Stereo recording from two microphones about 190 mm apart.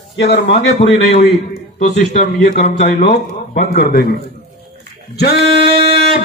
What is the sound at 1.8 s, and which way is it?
Speech, 40° left (ahead or behind).